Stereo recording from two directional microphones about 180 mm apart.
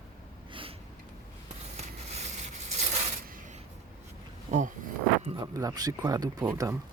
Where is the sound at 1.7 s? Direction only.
40° right (ahead or behind).